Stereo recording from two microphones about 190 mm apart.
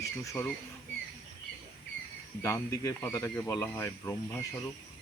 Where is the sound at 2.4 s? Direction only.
15° left (ahead or behind).